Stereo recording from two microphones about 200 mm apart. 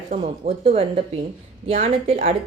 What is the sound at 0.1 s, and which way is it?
Speech, 40° right (ahead or behind).